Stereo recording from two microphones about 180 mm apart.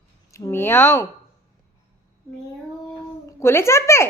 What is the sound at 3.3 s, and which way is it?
Speech, 15° left (ahead or behind).